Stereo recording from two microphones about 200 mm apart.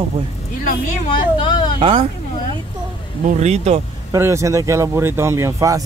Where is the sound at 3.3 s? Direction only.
35° right (ahead or behind).